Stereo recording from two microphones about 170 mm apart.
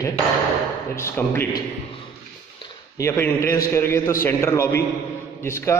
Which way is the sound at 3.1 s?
15° left (ahead or behind).